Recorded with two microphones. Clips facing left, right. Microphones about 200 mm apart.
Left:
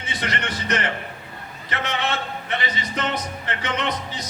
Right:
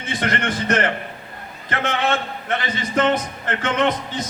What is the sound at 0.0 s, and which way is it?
A man's voice, 50° right (ahead or behind).